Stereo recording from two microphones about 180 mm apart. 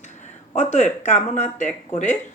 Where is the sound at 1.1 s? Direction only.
40° left (ahead or behind).